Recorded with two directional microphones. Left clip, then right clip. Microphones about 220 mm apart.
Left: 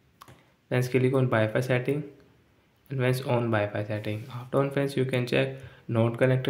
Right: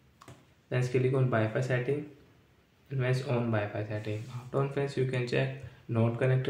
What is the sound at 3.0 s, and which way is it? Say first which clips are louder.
Speech: left 5 dB; 40° left (ahead or behind).